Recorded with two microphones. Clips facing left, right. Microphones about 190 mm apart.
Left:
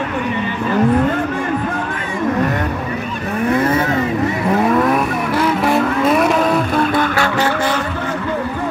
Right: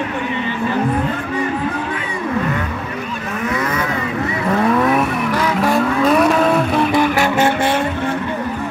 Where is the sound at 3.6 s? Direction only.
30° left (ahead or behind).